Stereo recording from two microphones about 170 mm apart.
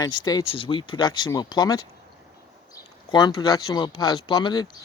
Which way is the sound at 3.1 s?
25° left (ahead or behind).